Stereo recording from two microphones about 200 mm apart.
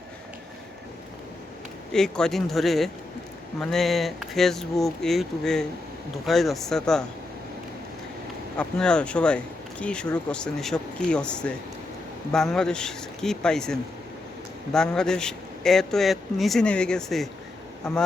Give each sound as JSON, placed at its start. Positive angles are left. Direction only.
{"t": 1.9, "sound": "speech", "side_deg": 5}
{"t": 8.5, "sound": "speech", "side_deg": 5}